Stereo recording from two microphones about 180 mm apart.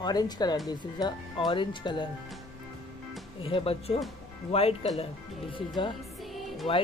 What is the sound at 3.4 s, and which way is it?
Speech, 30° left (ahead or behind).